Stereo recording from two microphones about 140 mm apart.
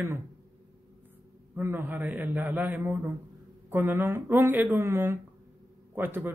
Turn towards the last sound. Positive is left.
turn(degrees=-15)  # may be behind; listen again after turning